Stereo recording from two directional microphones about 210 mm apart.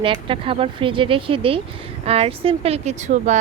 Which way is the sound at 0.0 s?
25° right (ahead or behind).